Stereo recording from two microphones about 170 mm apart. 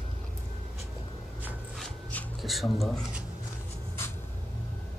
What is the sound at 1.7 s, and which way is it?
Rub, centre (ahead or behind).